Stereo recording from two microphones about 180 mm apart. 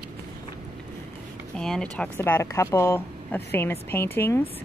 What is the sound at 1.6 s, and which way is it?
Speech, 5° left (ahead or behind).